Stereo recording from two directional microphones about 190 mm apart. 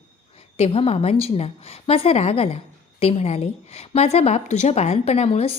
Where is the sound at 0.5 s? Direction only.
30° left (ahead or behind).